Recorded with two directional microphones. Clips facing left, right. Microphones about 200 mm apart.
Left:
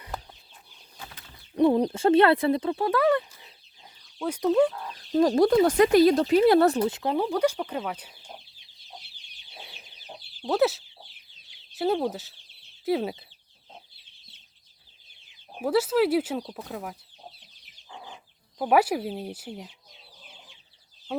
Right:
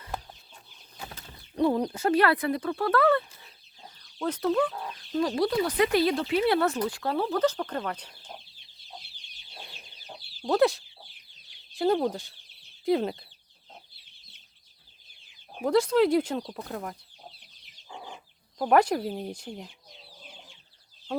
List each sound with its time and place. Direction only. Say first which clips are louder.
1.5 s speech: left 4 dB; 20° left (ahead or behind)
4.9 s speech: left 6 dB; 40° left (ahead or behind)
6.8 s speech: left 3 dB; 20° left (ahead or behind)
9.5 s chicken: even; 5° left (ahead or behind)
10.4 s speech: even; 5° left (ahead or behind)
15.6 s speech: right 1 dB; 5° left (ahead or behind)
18.6 s speech: even; 5° left (ahead or behind)